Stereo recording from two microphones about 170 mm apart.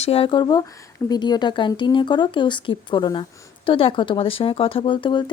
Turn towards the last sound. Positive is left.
turn(degrees=30)  # may be behind; listen again after turning